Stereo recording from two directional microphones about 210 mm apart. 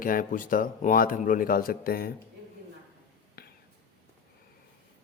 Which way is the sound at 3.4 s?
45° left (ahead or behind).